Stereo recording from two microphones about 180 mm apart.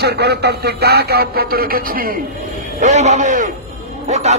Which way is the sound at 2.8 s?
40° right (ahead or behind).